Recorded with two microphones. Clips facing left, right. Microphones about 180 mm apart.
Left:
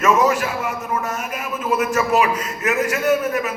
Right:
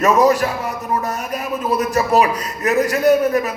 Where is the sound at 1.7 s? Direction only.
35° right (ahead or behind).